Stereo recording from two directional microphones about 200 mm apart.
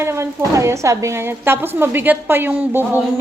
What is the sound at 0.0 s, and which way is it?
A woman's voice, 15° right (ahead or behind).